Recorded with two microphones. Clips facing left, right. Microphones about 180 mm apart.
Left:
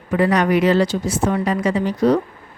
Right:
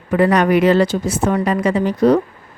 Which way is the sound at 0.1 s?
60° right (ahead or behind).